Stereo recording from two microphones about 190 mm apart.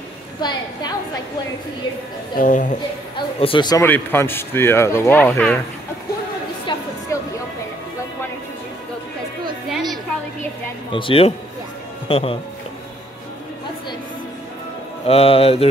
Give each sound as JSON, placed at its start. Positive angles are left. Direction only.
{"t": 0.4, "sound": "speech", "side_deg": 25}
{"t": 2.3, "sound": "speech", "side_deg": 45}
{"t": 3.2, "sound": "speech", "side_deg": 25}
{"t": 3.8, "sound": "speech", "side_deg": 10}
{"t": 6.7, "sound": "a sound", "side_deg": 25}
{"t": 9.7, "sound": "a sound", "side_deg": 0}
{"t": 10.9, "sound": "speech", "side_deg": 25}
{"t": 15.0, "sound": "speech", "side_deg": 30}